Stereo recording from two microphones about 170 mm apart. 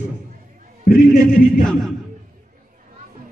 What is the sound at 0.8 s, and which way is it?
Speech, 60° left (ahead or behind).